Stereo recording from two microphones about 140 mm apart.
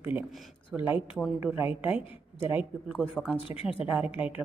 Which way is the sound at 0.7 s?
10° right (ahead or behind).